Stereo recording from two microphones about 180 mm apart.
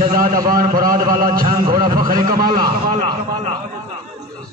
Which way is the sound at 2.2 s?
50° right (ahead or behind).